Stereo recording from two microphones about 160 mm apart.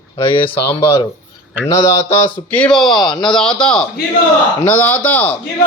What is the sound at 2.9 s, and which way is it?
Speech, 25° left (ahead or behind).